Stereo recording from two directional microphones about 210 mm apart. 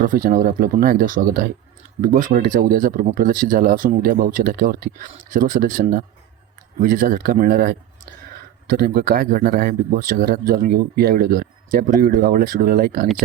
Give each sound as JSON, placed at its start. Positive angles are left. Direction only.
{"t": 0.0, "sound": "speech", "side_deg": -40}